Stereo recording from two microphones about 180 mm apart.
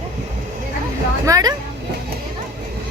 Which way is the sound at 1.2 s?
20° right (ahead or behind).